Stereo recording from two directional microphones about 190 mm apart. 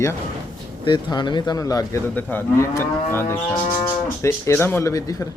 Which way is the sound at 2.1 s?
10° left (ahead or behind).